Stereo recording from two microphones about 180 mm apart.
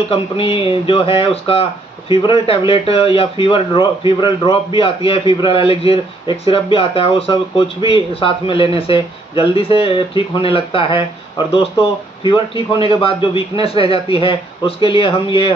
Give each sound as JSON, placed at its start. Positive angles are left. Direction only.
{"t": 0.1, "sound": "speech", "side_deg": 30}